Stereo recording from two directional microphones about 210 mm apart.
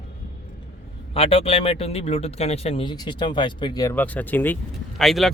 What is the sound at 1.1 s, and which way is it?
Speech, 25° left (ahead or behind).